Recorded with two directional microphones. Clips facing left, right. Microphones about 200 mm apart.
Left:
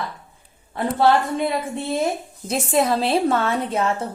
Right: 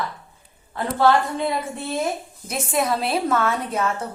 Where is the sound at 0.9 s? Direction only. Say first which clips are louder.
Even; 25° left (ahead or behind).